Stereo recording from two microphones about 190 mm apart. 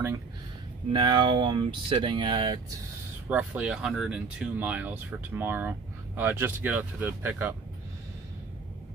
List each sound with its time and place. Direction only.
0.9 s speech: 25° right (ahead or behind)
3.3 s speech: 5° right (ahead or behind)